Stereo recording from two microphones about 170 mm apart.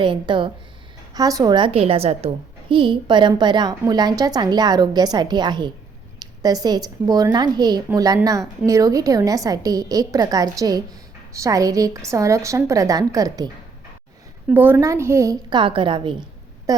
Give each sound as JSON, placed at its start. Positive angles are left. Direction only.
{"t": 0.0, "sound": "a woman's voice", "side_deg": -30}
{"t": 14.5, "sound": "a woman's voice", "side_deg": -10}